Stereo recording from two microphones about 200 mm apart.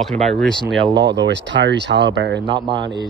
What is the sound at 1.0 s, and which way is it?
Speech, 60° right (ahead or behind).